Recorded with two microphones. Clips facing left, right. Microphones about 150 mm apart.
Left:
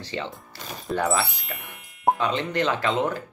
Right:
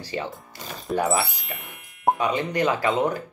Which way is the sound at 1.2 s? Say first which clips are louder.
Even; centre (ahead or behind).